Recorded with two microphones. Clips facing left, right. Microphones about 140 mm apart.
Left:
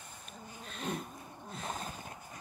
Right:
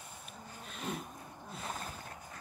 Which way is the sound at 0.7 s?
10° right (ahead or behind).